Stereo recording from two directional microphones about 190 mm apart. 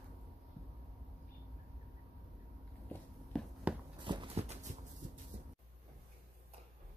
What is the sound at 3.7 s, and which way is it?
Walk, 5° right (ahead or behind).